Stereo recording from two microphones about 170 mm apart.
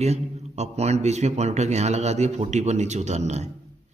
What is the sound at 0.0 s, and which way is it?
A man's voice, 40° right (ahead or behind).